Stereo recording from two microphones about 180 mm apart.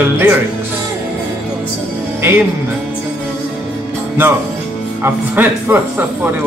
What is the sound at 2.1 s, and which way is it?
Music, 10° right (ahead or behind).